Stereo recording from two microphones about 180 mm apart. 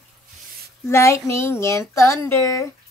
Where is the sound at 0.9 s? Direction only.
15° left (ahead or behind).